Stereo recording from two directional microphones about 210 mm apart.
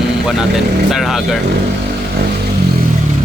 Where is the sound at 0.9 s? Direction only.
Centre (ahead or behind).